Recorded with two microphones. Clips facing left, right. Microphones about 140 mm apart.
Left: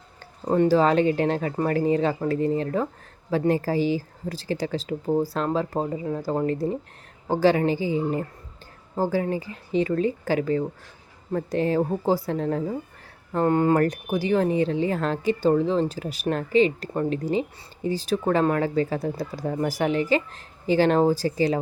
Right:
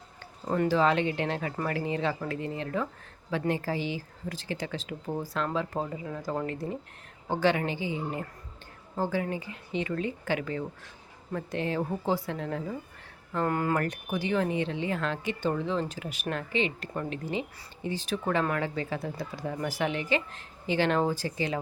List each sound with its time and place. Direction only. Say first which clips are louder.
0.4 s speech: left 6 dB; 35° left (ahead or behind)